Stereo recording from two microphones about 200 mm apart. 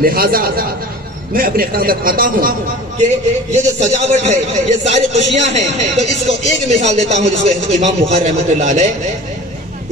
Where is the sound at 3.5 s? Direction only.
35° right (ahead or behind).